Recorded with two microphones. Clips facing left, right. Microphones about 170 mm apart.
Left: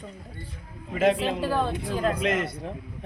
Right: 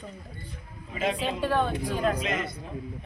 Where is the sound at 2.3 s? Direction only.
65° left (ahead or behind).